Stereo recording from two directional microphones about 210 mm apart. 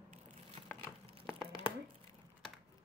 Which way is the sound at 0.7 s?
10° left (ahead or behind).